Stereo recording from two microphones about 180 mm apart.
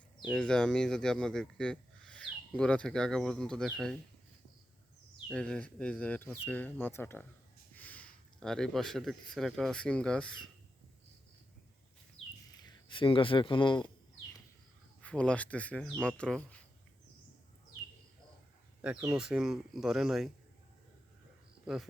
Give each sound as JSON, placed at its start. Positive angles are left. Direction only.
{"t": 0.2, "sound": "speech", "side_deg": 5}
{"t": 5.3, "sound": "speech", "side_deg": 5}
{"t": 12.2, "sound": "a sound", "side_deg": 30}
{"t": 12.5, "sound": "speech", "side_deg": 25}
{"t": 15.0, "sound": "speech", "side_deg": 5}
{"t": 18.8, "sound": "speech", "side_deg": -5}